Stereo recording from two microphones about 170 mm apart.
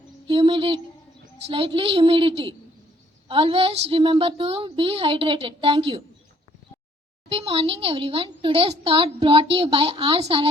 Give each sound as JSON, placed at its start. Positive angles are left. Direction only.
{"t": 0.3, "sound": "a woman's voice", "side_deg": -30}
{"t": 7.3, "sound": "a woman's voice", "side_deg": -35}